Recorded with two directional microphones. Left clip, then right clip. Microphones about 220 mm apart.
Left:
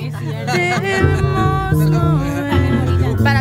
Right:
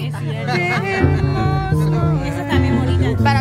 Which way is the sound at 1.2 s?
15° left (ahead or behind).